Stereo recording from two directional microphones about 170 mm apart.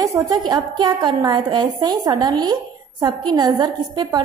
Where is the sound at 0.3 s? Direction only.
25° right (ahead or behind).